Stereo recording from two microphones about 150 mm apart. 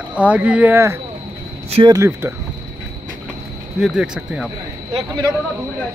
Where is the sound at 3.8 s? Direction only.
5° right (ahead or behind).